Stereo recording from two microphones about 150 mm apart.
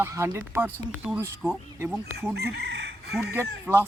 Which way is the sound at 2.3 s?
90° right.